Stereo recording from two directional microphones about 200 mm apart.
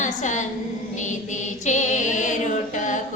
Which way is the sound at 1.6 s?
35° left (ahead or behind).